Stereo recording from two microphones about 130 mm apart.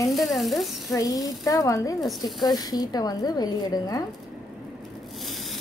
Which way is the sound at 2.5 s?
30° left (ahead or behind).